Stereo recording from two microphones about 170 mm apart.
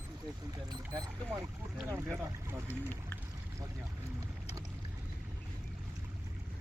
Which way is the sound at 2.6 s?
10° left (ahead or behind).